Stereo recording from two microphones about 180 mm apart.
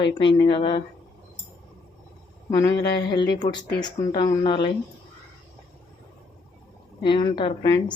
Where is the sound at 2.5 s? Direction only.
20° left (ahead or behind).